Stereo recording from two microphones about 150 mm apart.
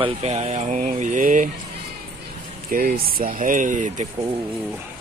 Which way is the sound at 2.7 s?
75° right (ahead or behind).